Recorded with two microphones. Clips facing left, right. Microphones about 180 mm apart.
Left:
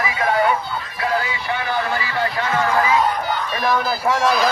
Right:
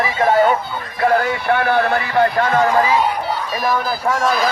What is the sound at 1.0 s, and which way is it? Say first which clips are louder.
Speech: right 7 dB; 55° right (ahead or behind).